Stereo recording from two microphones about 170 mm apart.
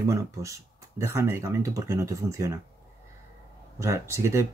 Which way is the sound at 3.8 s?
15° right (ahead or behind).